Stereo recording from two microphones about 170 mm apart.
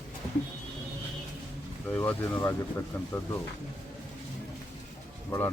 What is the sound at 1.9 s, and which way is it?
Speech, 10° left (ahead or behind).